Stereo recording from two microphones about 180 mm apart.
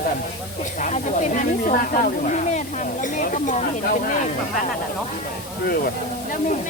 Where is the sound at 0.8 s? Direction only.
45° left (ahead or behind).